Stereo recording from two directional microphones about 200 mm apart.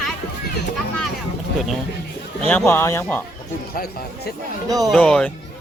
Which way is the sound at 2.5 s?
10° left (ahead or behind).